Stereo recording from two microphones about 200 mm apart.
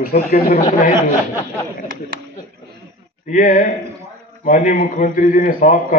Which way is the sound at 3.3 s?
45° left (ahead or behind).